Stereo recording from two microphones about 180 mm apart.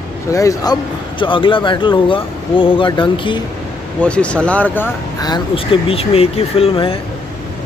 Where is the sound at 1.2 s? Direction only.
30° left (ahead or behind).